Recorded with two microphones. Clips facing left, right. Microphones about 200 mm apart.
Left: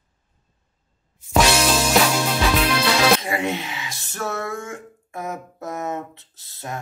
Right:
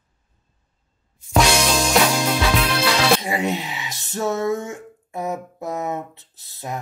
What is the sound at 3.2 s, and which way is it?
Speech, 15° right (ahead or behind).